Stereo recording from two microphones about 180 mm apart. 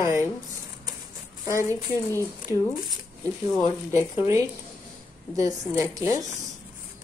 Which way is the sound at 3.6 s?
15° right (ahead or behind).